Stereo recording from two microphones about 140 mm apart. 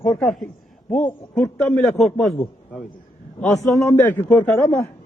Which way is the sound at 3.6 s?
20° left (ahead or behind).